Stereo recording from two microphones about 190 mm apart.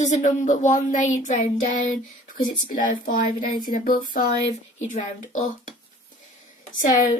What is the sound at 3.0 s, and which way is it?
A woman's voice, 45° left (ahead or behind).